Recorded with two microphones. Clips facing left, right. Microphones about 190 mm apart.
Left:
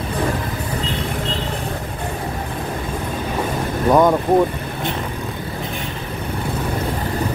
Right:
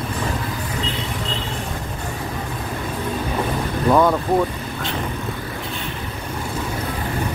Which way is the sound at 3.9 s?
15° left (ahead or behind).